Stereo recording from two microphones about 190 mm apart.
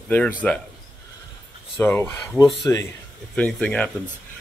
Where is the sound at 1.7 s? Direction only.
10° left (ahead or behind).